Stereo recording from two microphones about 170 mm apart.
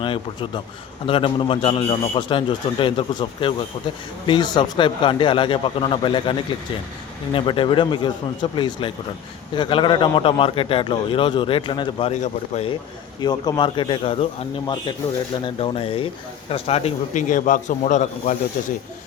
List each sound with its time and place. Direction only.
0.0 s a man's voice: 30° left (ahead or behind)
7.3 s a man's voice: 30° left (ahead or behind)
12.2 s a man's voice: 40° left (ahead or behind)
13.1 s a man's voice: 25° left (ahead or behind); by 18.3 s 45° left (ahead or behind)